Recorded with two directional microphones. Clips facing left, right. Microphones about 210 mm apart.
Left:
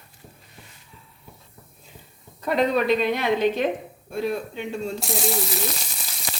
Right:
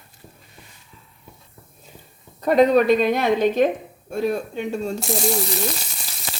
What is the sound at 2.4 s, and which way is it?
Speech, 45° right (ahead or behind).